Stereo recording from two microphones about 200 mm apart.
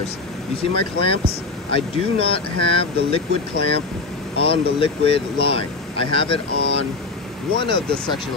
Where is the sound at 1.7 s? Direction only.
25° left (ahead or behind).